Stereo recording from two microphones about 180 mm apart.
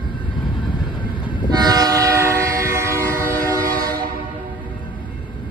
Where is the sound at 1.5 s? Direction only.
20° right (ahead or behind).